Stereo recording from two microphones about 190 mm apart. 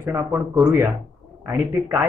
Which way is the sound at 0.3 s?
Centre (ahead or behind).